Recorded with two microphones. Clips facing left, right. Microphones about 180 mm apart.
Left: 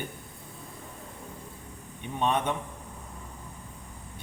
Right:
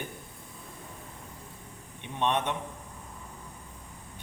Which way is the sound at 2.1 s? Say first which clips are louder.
Left 1 dB; 10° left (ahead or behind).